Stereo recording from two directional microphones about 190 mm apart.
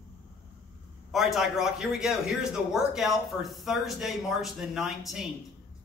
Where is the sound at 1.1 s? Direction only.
Centre (ahead or behind).